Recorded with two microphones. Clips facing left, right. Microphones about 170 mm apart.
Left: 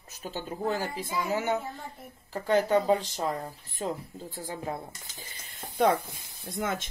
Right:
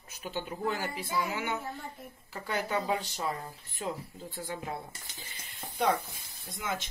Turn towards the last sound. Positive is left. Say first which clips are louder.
# left 5 dB
turn(degrees=50)  # may be behind; listen again after turning